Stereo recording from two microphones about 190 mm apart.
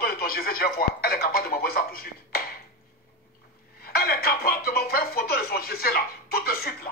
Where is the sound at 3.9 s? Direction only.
55° left (ahead or behind).